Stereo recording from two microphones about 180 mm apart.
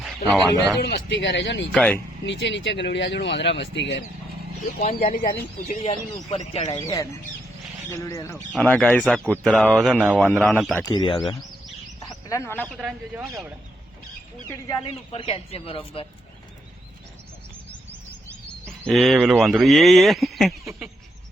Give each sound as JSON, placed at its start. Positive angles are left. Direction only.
{"t": 0.8, "sound": "speech", "side_deg": 65}
{"t": 1.7, "sound": "speech", "side_deg": 5}
{"t": 2.2, "sound": "speech", "side_deg": 80}
{"t": 4.8, "sound": "speech", "side_deg": 45}
{"t": 5.6, "sound": "speech", "side_deg": 35}
{"t": 6.7, "sound": "speech", "side_deg": 15}
{"t": 8.5, "sound": "speech", "side_deg": 5}
{"t": 10.8, "sound": "speech", "side_deg": 25}
{"t": 12.0, "sound": "a sound", "side_deg": 15}
{"t": 12.6, "sound": "speech", "side_deg": 0}
{"t": 14.8, "sound": "speech", "side_deg": 30}
{"t": 18.9, "sound": "speech", "side_deg": 0}